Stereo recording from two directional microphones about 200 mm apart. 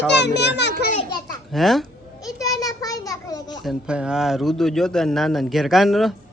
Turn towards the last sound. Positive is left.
turn(degrees=0)  # may be behind; listen again after turning